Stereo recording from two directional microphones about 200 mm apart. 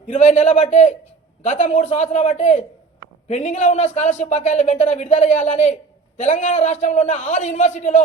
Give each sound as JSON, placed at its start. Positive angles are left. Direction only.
{"t": 0.1, "sound": "speech", "side_deg": 35}